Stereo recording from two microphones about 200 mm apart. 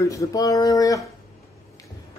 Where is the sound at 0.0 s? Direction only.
15° left (ahead or behind).